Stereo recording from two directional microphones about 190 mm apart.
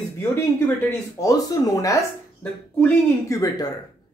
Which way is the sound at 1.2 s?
20° left (ahead or behind).